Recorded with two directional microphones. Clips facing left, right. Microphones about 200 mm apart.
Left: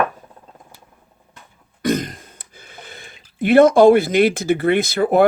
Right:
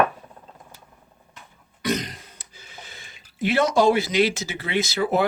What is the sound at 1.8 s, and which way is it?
Speech, 50° left (ahead or behind).